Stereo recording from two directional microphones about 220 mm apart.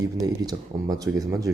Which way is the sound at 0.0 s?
15° right (ahead or behind).